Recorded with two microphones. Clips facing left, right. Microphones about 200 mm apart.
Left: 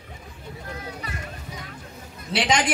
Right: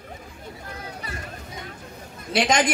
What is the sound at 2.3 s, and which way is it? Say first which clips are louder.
Speech: right 2 dB; 45° right (ahead or behind).